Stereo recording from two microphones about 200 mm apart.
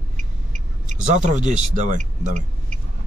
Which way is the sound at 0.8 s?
35° right (ahead or behind).